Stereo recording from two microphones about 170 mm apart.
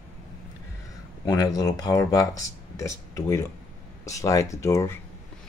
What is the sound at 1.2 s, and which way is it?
Speech, 20° left (ahead or behind).